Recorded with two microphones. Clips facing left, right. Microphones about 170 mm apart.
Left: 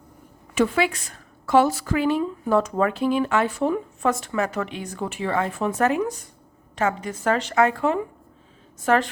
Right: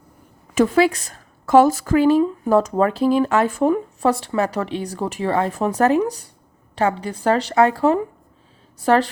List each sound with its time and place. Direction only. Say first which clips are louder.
0.5 s a woman's voice: right 5 dB; 40° right (ahead or behind)
4.1 s a woman's voice: right 3 dB; 35° right (ahead or behind)